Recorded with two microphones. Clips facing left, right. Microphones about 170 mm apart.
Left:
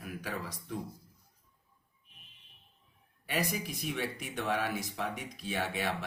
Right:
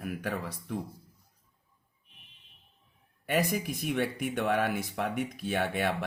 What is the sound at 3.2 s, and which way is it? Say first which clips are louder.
Speech: right 5 dB; 50° right (ahead or behind).